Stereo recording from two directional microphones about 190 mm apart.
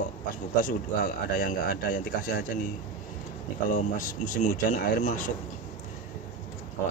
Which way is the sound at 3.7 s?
45° left (ahead or behind).